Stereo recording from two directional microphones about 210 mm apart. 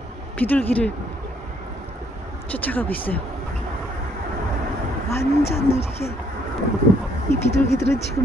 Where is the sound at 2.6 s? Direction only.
10° left (ahead or behind).